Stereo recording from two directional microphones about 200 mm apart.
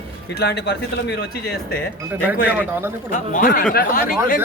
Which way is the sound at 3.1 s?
45° left (ahead or behind).